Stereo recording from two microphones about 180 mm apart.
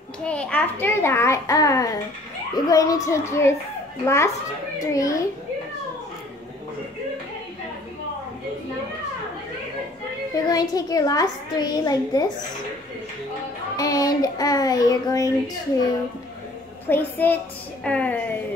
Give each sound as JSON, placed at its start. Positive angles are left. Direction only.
{"t": 0.2, "sound": "a child's voice", "side_deg": 5}
{"t": 10.5, "sound": "a child's voice", "side_deg": 20}
{"t": 13.7, "sound": "a child's voice", "side_deg": 20}
{"t": 16.8, "sound": "a child's voice", "side_deg": 10}